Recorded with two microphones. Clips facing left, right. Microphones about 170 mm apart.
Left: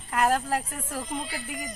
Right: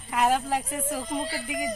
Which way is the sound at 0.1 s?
5° right (ahead or behind).